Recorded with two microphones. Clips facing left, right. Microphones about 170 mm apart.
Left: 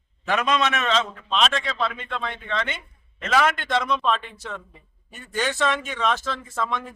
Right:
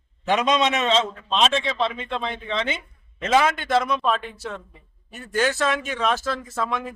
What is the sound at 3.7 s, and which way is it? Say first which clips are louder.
A man's voice: right 2 dB; 5° right (ahead or behind).